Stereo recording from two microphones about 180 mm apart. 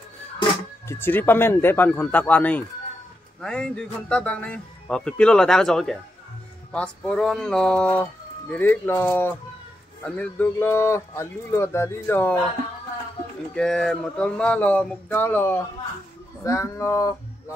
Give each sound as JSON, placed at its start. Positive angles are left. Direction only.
{"t": 0.8, "sound": "a man's voice", "side_deg": 10}
{"t": 13.6, "sound": "speech", "side_deg": 5}